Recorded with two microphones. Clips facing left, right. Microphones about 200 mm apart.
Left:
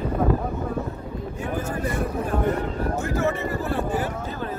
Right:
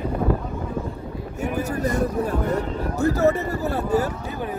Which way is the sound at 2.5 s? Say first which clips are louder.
Even; 40° right (ahead or behind).